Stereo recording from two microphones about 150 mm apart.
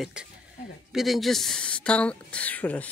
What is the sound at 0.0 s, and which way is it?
A woman's voice, 5° right (ahead or behind).